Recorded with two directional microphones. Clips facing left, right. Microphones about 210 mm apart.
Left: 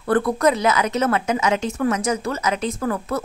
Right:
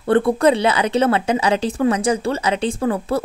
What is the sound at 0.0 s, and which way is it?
Speech, 25° right (ahead or behind).